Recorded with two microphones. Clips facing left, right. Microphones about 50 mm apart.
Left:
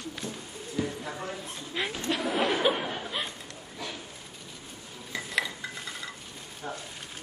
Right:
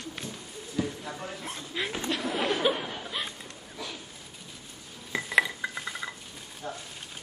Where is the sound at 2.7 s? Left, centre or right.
Centre.